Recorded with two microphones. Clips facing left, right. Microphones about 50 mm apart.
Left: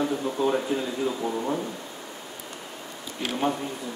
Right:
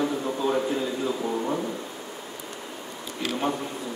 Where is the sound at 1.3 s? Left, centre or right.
Centre.